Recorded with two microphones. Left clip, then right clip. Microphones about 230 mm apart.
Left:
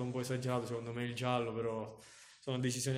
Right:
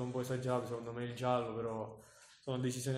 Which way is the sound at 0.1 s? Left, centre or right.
Left.